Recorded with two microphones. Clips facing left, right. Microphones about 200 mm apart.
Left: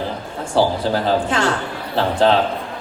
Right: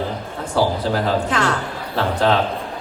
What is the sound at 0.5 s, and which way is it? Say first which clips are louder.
A man's voice: left 2 dB; 30° left (ahead or behind).